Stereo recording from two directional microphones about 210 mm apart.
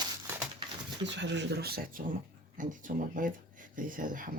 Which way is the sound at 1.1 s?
55° right (ahead or behind).